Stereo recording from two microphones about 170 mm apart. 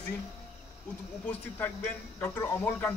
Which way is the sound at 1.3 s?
10° left (ahead or behind).